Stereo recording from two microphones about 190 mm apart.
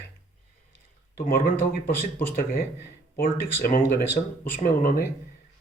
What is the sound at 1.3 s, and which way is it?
Speech, 50° left (ahead or behind).